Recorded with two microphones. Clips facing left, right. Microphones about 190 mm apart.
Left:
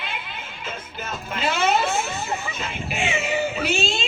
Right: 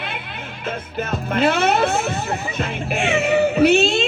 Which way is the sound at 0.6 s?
60° right (ahead or behind).